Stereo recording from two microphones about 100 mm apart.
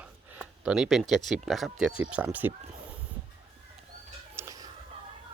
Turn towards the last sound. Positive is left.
turn(degrees=-25)  # may be behind; listen again after turning